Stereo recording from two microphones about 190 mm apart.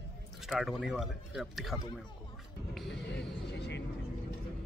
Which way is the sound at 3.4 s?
65° left (ahead or behind).